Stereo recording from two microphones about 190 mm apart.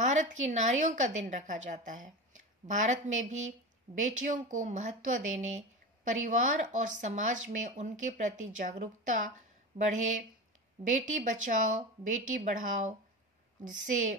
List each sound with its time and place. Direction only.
0.0 s a woman's voice: 40° right (ahead or behind)